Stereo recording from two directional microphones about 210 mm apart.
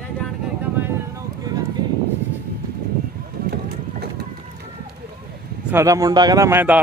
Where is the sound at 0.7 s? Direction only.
10° right (ahead or behind).